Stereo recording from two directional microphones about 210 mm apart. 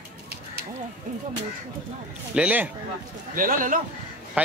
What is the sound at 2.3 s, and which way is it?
Speech, 5° right (ahead or behind).